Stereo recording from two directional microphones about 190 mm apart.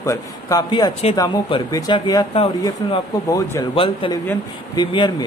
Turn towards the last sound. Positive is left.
turn(degrees=25)  # may be behind; listen again after turning